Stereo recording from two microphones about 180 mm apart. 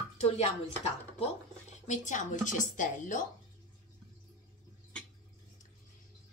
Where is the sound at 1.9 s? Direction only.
45° left (ahead or behind).